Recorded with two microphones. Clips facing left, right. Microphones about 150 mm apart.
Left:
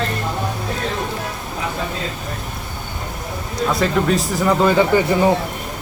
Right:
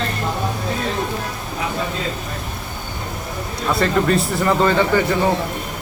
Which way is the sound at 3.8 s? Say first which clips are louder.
Right 2 dB; centre (ahead or behind).